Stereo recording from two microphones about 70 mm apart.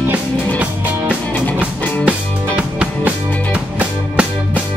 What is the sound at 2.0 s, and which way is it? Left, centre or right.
Music, centre.